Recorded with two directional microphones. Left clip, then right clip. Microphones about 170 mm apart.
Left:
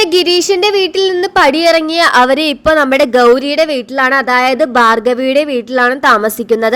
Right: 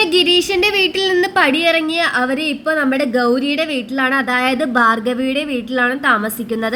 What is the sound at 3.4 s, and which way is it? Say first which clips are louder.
Speech: left 6 dB; 40° left (ahead or behind).